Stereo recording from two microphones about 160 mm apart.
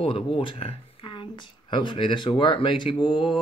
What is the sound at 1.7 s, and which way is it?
Speech, 30° left (ahead or behind).